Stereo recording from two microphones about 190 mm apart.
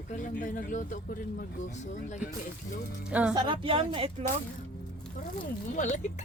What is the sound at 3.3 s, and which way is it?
Speech, 25° right (ahead or behind).